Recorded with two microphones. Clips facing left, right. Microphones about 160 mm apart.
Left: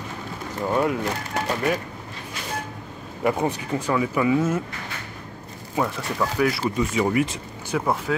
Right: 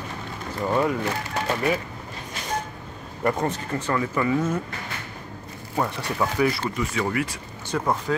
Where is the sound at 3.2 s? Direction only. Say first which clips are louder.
Left 1 dB; 10° left (ahead or behind).